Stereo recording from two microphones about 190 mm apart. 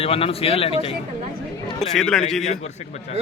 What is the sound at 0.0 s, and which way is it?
Speech, 30° left (ahead or behind).